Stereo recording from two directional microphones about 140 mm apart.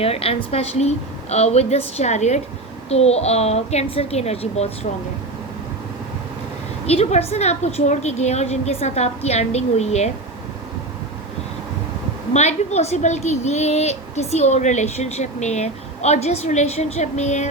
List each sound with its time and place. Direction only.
0.0 s a woman's voice: 45° left (ahead or behind)
6.8 s a woman's voice: 50° left (ahead or behind)
12.3 s a woman's voice: 50° left (ahead or behind)